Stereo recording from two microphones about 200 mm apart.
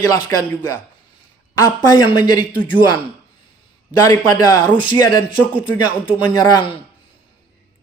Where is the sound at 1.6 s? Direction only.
20° left (ahead or behind).